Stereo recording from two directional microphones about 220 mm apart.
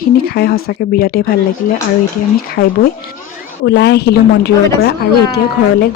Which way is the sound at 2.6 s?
45° left (ahead or behind).